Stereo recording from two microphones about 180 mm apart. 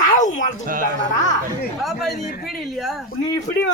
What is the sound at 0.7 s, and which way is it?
Speech, 50° right (ahead or behind).